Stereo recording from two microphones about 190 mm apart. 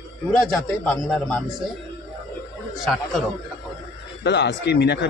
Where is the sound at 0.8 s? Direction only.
5° left (ahead or behind).